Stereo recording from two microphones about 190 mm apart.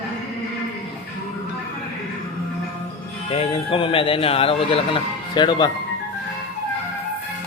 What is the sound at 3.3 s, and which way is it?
Speech, 30° left (ahead or behind).